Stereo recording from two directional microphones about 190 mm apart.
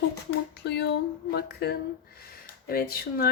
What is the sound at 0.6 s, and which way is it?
Speech, 60° left (ahead or behind).